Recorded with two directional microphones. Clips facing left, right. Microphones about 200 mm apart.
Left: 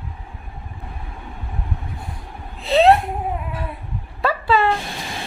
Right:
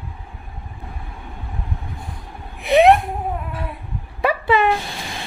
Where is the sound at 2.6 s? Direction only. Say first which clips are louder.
Right 1 dB; 15° right (ahead or behind).